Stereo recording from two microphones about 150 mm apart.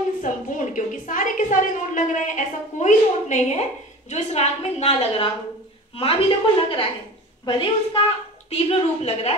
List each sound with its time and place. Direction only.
0.2 s a woman's voice: 60° left (ahead or behind); by 9.3 s 40° left (ahead or behind)